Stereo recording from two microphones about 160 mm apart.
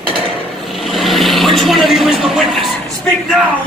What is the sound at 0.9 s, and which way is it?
Vehicle, centre (ahead or behind).